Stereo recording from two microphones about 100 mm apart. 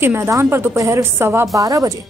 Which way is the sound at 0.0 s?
20° right (ahead or behind).